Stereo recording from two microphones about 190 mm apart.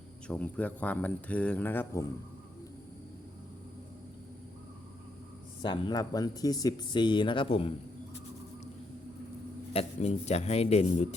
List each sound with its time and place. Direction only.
0.3 s speech: 5° left (ahead or behind)
5.6 s speech: 25° left (ahead or behind)
9.7 s a man's voice: 35° left (ahead or behind)